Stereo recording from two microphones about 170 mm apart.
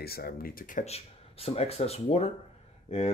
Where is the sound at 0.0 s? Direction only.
65° left (ahead or behind).